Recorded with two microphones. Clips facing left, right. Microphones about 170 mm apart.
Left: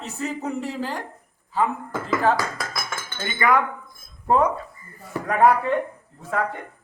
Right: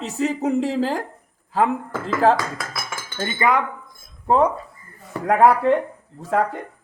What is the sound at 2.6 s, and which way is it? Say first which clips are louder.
Cutlery: even; 5° right (ahead or behind).